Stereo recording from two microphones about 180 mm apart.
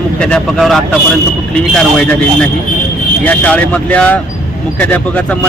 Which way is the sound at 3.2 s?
10° left (ahead or behind).